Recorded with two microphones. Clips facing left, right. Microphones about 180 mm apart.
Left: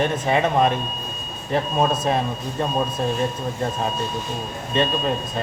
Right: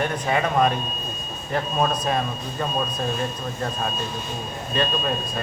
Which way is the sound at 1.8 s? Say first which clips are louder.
Left 2 dB; 25° left (ahead or behind).